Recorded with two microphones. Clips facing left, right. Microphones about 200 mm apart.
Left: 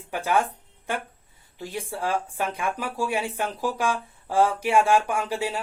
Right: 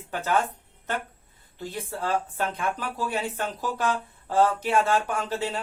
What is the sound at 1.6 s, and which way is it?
Speech, 10° left (ahead or behind).